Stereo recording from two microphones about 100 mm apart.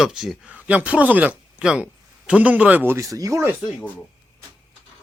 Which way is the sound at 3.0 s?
35° right (ahead or behind).